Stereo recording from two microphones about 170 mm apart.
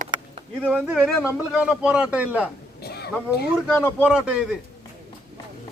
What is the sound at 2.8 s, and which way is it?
Speech, 70° left (ahead or behind).